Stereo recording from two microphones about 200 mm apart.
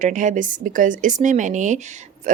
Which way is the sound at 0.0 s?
40° right (ahead or behind).